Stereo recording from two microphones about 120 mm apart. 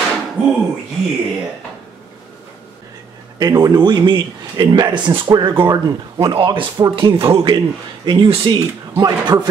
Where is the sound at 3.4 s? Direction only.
35° right (ahead or behind).